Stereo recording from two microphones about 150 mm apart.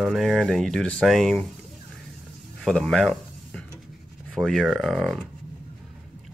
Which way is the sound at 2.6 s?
5° left (ahead or behind).